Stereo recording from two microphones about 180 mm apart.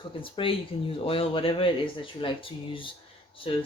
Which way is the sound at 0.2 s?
30° left (ahead or behind).